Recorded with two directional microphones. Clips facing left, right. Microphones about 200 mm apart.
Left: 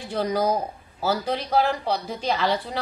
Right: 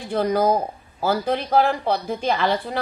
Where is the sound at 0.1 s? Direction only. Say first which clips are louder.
Right 4 dB; 55° right (ahead or behind).